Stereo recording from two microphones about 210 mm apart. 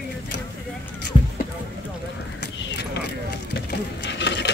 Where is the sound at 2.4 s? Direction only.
55° left (ahead or behind).